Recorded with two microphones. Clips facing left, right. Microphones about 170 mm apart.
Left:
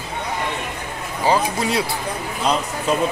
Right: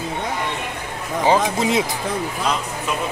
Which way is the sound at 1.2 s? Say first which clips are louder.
Right 1 dB; 20° right (ahead or behind).